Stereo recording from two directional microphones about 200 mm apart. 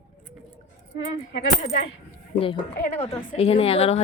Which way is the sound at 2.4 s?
25° left (ahead or behind).